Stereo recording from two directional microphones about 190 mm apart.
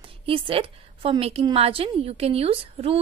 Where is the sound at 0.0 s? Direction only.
30° right (ahead or behind).